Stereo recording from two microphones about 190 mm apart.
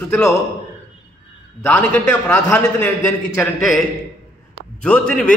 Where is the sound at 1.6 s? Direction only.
10° left (ahead or behind).